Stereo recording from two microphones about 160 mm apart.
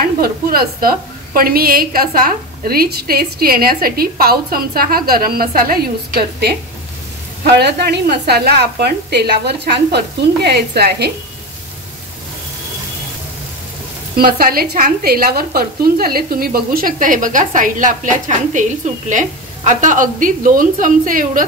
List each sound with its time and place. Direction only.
0.0 s a woman's voice: 65° right (ahead or behind)
7.4 s a woman's voice: 90° right
14.1 s speech: 65° right (ahead or behind)